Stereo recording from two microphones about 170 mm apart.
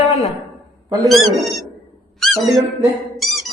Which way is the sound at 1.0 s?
Centre (ahead or behind).